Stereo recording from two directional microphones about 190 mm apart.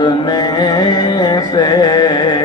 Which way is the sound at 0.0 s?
20° left (ahead or behind).